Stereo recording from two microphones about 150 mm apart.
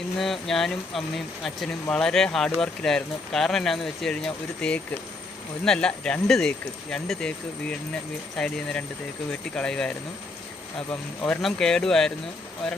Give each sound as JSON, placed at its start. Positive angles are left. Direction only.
{"t": 0.2, "sound": "speech", "side_deg": 0}
{"t": 11.2, "sound": "speech", "side_deg": 5}